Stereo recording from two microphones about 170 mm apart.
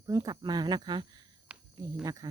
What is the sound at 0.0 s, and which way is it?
Speech, 20° right (ahead or behind).